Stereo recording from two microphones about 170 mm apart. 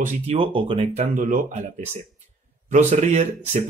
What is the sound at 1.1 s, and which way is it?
Speech, 50° right (ahead or behind).